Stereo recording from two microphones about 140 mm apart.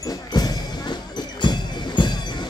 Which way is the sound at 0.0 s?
25° left (ahead or behind).